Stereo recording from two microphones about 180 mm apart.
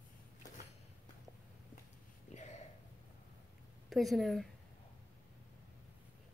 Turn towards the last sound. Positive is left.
turn(degrees=0)  # may be behind; listen again after turning